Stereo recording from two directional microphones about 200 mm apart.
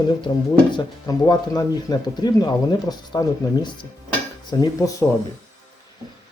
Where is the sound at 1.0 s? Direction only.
20° left (ahead or behind).